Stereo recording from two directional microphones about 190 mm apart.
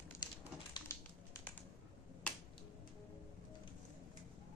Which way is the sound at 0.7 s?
20° left (ahead or behind).